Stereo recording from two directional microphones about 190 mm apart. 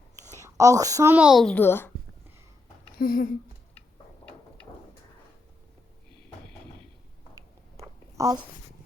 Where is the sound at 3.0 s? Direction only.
50° left (ahead or behind).